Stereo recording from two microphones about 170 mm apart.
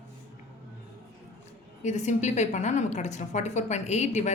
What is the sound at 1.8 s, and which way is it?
A woman's voice, 45° left (ahead or behind).